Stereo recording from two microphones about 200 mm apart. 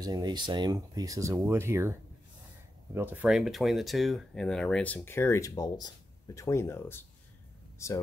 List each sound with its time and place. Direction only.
0.0 s speech: 20° right (ahead or behind); by 8.0 s 15° left (ahead or behind)